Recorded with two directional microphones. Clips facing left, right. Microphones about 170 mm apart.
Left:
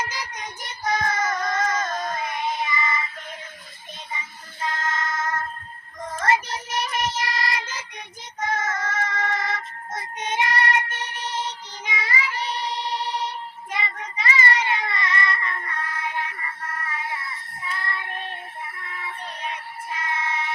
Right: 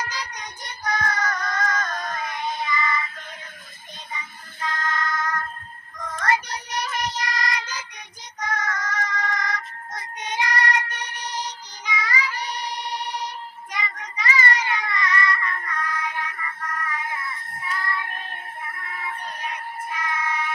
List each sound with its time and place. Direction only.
0.0 s child singing: 20° left (ahead or behind)
4.6 s child singing: 25° left (ahead or behind)
19.4 s a sound: 25° left (ahead or behind)